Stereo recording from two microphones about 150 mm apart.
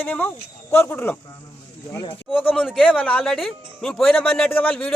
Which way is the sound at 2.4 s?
5° left (ahead or behind).